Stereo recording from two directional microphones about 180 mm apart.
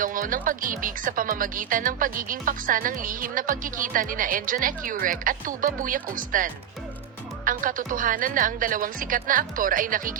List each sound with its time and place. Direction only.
0.0 s speech: 50° right (ahead or behind)